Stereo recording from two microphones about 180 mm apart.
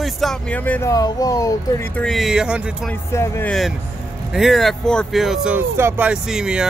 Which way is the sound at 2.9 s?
10° left (ahead or behind).